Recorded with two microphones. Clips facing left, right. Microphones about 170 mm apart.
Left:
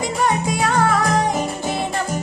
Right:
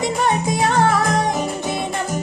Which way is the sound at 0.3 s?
25° right (ahead or behind).